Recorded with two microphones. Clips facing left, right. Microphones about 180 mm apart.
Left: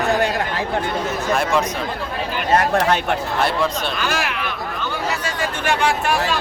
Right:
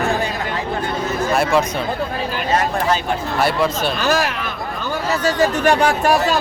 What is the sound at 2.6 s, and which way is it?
Speech, 65° left (ahead or behind).